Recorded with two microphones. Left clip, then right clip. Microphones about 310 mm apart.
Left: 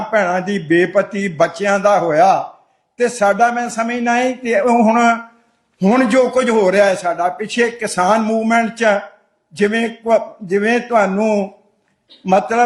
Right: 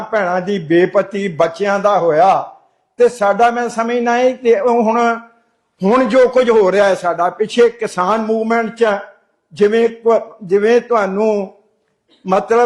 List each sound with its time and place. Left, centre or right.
0.1 s a man's voice: centre